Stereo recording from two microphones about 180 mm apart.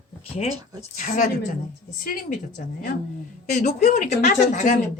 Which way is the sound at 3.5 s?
40° left (ahead or behind).